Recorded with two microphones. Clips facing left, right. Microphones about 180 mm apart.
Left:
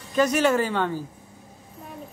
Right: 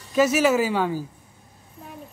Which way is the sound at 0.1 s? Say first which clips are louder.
Right 2 dB; 5° right (ahead or behind).